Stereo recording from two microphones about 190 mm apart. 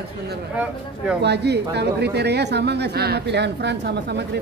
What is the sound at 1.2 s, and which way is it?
A woman's voice, 60° right (ahead or behind).